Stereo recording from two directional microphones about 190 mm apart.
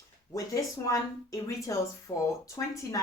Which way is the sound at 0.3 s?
15° left (ahead or behind).